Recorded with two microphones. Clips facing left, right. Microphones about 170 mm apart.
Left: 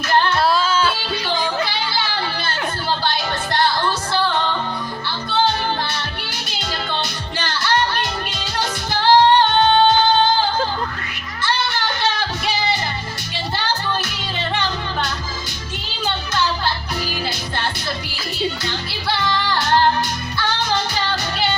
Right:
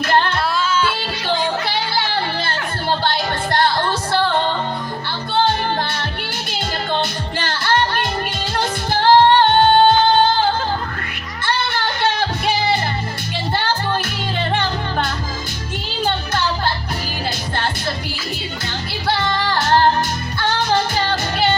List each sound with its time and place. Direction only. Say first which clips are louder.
0.4 s music: left 2 dB; 35° left (ahead or behind)
3.0 s music: right 2 dB; 55° right (ahead or behind)
6.6 s music: right 4 dB; 50° right (ahead or behind)
8.9 s female singing: right 1 dB; 50° right (ahead or behind)
12.5 s music: right 3 dB; 55° right (ahead or behind)
14.5 s music: right 1 dB; 50° right (ahead or behind)
19.0 s music: right 2 dB; 45° right (ahead or behind)